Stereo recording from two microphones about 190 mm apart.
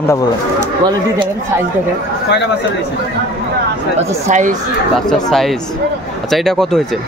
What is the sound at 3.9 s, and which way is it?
Speech, 40° right (ahead or behind).